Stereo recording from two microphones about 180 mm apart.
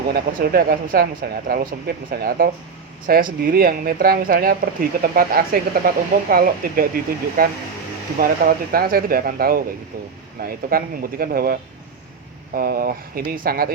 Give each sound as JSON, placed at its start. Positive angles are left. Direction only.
{"t": 0.1, "sound": "speech", "side_deg": -55}